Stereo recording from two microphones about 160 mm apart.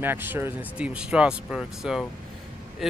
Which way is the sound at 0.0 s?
10° right (ahead or behind).